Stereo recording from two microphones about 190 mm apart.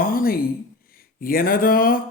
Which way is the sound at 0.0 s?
50° left (ahead or behind).